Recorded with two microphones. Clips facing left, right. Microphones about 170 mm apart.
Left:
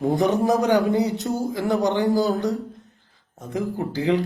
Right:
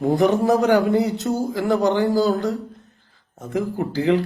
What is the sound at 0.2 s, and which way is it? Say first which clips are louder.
A man's voice: right 3 dB; 20° left (ahead or behind).